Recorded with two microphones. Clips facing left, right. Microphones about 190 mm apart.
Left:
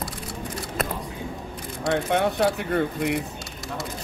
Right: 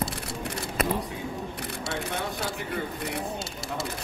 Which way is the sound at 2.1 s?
65° left (ahead or behind).